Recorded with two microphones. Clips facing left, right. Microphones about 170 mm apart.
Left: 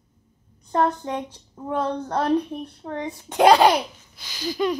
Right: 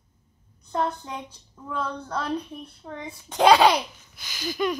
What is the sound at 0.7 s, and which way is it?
A woman's voice, 50° left (ahead or behind).